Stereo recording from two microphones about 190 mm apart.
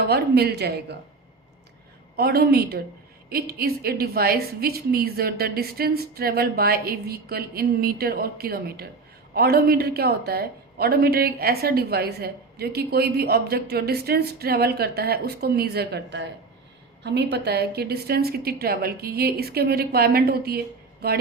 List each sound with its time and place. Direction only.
0.0 s a woman's voice: 55° right (ahead or behind)
2.1 s a woman's voice: 55° right (ahead or behind)